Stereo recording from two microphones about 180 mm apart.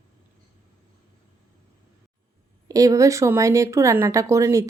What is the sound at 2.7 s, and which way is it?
A woman's voice, 20° right (ahead or behind).